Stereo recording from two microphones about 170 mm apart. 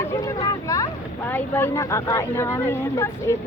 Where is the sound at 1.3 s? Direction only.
10° left (ahead or behind).